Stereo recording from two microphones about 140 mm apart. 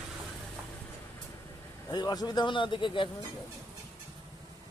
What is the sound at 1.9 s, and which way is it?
Speech, 30° left (ahead or behind).